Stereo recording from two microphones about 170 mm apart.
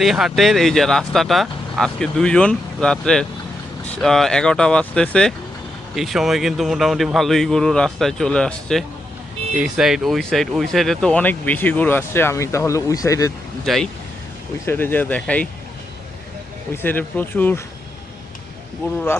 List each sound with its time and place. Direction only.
0.0 s speech: centre (ahead or behind); by 13.3 s 20° left (ahead or behind)
13.7 s speech: centre (ahead or behind)
14.6 s speech: 15° left (ahead or behind)
16.7 s speech: 10° left (ahead or behind)